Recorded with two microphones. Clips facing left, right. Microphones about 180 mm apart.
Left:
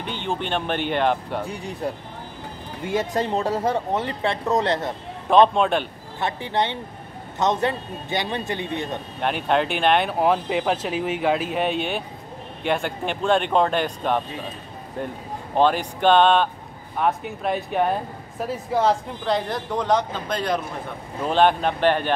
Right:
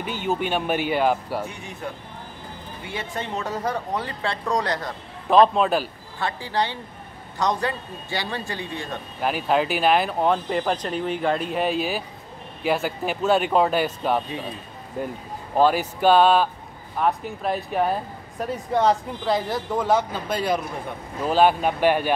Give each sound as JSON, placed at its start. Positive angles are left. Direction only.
{"t": 0.0, "sound": "speech", "side_deg": -5}
{"t": 1.5, "sound": "speech", "side_deg": 35}
{"t": 5.3, "sound": "speech", "side_deg": 0}
{"t": 6.1, "sound": "speech", "side_deg": 20}
{"t": 9.2, "sound": "speech", "side_deg": -5}